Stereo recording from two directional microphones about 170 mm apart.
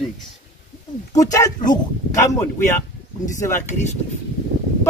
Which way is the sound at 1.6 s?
50° left (ahead or behind).